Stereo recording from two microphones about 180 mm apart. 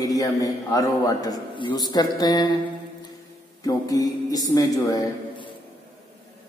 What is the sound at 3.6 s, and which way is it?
A man's voice, 20° left (ahead or behind).